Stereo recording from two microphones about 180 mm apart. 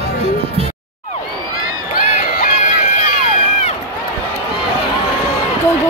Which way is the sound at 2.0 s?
50° left (ahead or behind).